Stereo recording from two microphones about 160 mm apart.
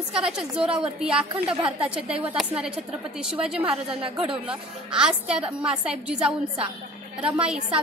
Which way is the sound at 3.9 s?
35° right (ahead or behind).